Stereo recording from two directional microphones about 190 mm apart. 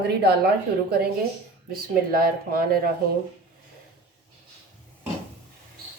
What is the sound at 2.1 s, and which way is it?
Speech, 50° right (ahead or behind).